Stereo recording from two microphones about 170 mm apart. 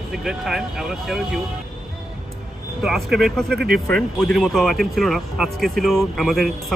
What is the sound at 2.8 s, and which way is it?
Speech, centre (ahead or behind).